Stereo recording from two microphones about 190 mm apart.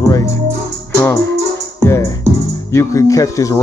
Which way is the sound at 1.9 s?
15° left (ahead or behind).